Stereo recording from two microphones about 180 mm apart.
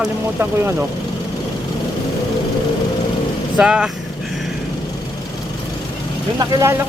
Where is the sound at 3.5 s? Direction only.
5° right (ahead or behind).